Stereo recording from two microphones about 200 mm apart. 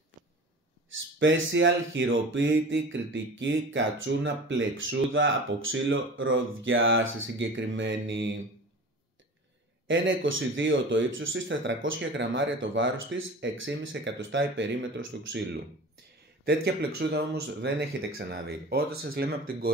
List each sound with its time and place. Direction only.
0.8 s speech: 70° right (ahead or behind)
9.8 s speech: 75° right (ahead or behind); by 19.7 s 50° right (ahead or behind)